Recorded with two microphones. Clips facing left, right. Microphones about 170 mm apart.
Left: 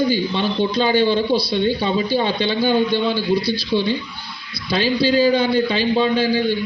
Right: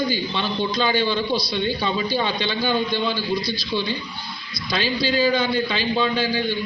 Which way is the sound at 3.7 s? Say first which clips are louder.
Left 6 dB; 15° left (ahead or behind).